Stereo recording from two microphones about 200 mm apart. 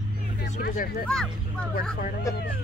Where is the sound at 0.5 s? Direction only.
45° left (ahead or behind).